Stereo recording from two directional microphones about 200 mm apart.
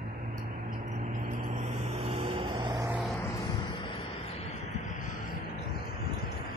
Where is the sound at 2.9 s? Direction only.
5° right (ahead or behind).